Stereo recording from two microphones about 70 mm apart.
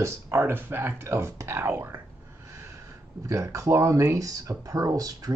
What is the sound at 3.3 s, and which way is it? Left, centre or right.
Speech, right.